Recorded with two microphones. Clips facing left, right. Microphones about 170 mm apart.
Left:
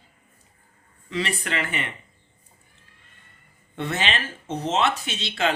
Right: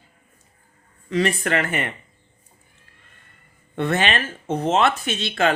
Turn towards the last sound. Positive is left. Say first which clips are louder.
# right 4 dB
turn(degrees=-50)  # may be behind; listen again after turning